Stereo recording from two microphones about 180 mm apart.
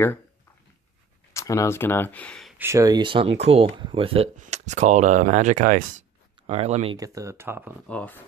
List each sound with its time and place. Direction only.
1.3 s speech: 15° left (ahead or behind)
2.5 s speech: 15° right (ahead or behind); by 7.0 s 35° right (ahead or behind)
7.0 s speech: 15° right (ahead or behind)
7.9 s speech: 10° left (ahead or behind)